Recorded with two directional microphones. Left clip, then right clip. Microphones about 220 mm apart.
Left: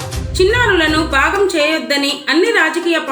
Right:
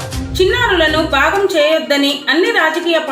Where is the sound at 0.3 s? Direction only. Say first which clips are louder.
Even; 55° left (ahead or behind).